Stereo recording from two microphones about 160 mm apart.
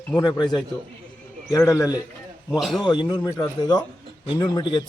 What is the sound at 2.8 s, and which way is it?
A man's voice, 25° left (ahead or behind).